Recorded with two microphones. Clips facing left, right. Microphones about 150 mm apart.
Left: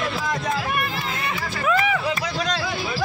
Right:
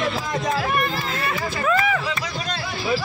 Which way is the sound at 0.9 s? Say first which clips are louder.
Right 2 dB; 15° left (ahead or behind).